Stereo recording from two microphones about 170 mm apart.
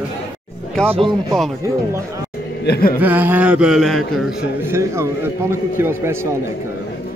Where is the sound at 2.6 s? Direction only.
65° left (ahead or behind).